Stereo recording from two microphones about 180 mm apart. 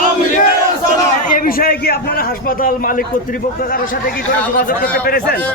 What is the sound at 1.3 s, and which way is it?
A man's voice, 50° left (ahead or behind).